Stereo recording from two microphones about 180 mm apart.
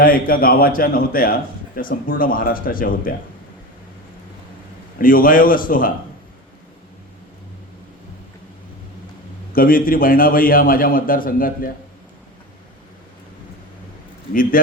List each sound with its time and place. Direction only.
0.0 s a man's voice: 50° left (ahead or behind)
4.9 s a man's voice: 50° left (ahead or behind)
9.5 s a man's voice: 55° left (ahead or behind)